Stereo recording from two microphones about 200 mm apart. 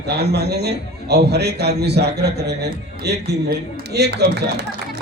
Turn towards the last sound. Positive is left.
turn(degrees=-55)  # may be behind; listen again after turning